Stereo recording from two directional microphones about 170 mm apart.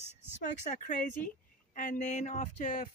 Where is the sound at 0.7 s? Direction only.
55° left (ahead or behind).